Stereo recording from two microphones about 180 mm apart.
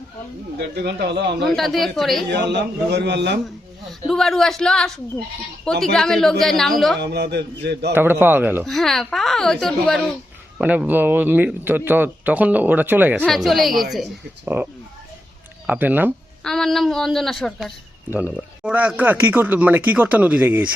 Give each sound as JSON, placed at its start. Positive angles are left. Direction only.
{"t": 0.8, "sound": "a man's voice", "side_deg": -65}
{"t": 1.5, "sound": "speech", "side_deg": 0}
{"t": 2.3, "sound": "a man's voice", "side_deg": -70}
{"t": 4.0, "sound": "speech", "side_deg": 0}
{"t": 7.0, "sound": "a man's voice", "side_deg": -65}
{"t": 7.9, "sound": "speech", "side_deg": -10}
{"t": 8.6, "sound": "speech", "side_deg": 0}
{"t": 10.6, "sound": "speech", "side_deg": -10}
{"t": 13.2, "sound": "speech", "side_deg": 0}
{"t": 16.4, "sound": "speech", "side_deg": 0}